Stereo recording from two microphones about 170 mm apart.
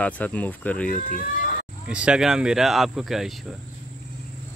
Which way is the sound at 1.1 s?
55° left (ahead or behind).